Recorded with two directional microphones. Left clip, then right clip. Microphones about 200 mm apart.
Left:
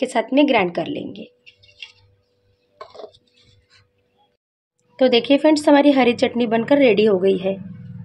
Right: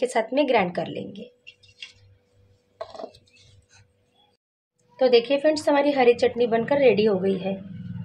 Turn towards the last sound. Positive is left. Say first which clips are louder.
# left 6 dB
turn(degrees=50)  # may be behind; listen again after turning